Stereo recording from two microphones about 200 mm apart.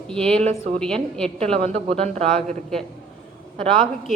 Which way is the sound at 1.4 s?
30° right (ahead or behind).